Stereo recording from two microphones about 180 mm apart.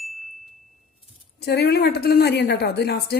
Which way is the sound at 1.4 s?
65° left (ahead or behind).